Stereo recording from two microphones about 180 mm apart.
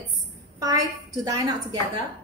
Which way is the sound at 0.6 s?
20° right (ahead or behind).